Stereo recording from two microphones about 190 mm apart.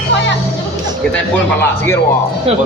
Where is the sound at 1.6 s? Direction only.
15° left (ahead or behind).